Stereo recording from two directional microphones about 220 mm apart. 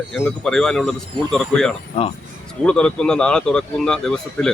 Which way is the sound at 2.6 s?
5° left (ahead or behind).